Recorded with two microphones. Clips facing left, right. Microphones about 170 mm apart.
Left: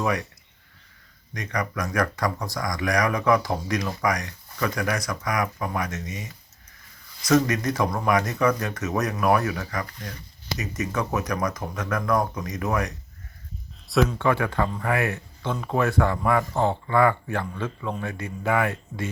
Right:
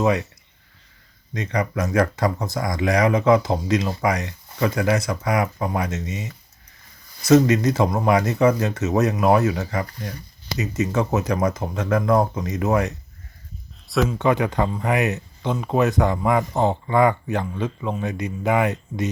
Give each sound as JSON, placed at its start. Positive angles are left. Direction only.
{"t": 0.0, "sound": "speech", "side_deg": -25}
{"t": 1.3, "sound": "speech", "side_deg": -25}
{"t": 13.8, "sound": "speech", "side_deg": 0}
{"t": 14.2, "sound": "speech", "side_deg": -20}